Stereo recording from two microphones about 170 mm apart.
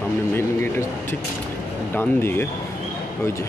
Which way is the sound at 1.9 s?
15° left (ahead or behind).